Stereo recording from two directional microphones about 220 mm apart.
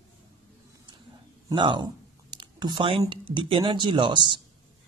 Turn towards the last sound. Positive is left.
turn(degrees=-20)  # may be behind; listen again after turning